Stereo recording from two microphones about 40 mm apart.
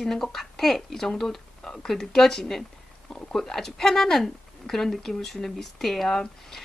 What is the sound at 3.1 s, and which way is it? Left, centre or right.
Speech, left.